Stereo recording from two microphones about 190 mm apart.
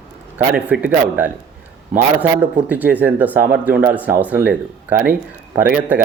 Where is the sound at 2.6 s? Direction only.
10° right (ahead or behind).